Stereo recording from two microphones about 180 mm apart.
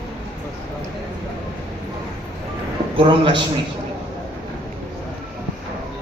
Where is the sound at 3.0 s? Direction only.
30° right (ahead or behind).